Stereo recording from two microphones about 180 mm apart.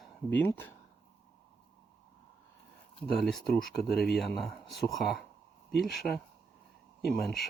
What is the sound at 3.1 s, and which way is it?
Speech, centre (ahead or behind).